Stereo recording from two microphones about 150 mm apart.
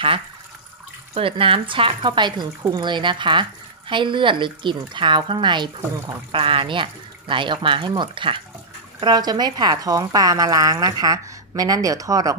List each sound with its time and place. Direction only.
1.1 s a woman's voice: 35° right (ahead or behind)